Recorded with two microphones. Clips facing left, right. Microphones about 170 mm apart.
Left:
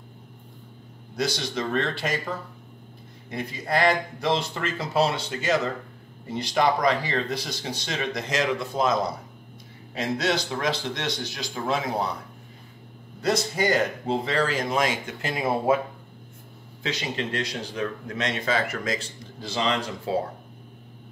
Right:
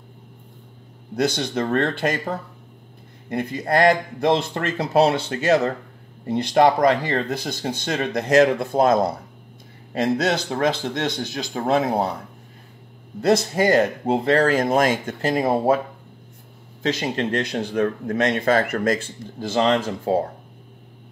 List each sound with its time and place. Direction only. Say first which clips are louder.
1.1 s speech: right 6 dB; 55° right (ahead or behind)
13.2 s speech: right 6 dB; 50° right (ahead or behind)
16.8 s speech: right 7 dB; 45° right (ahead or behind)